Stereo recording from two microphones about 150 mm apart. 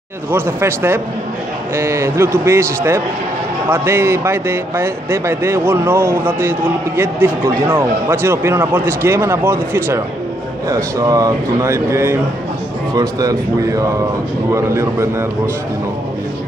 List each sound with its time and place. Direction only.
0.3 s a man's voice: 15° right (ahead or behind)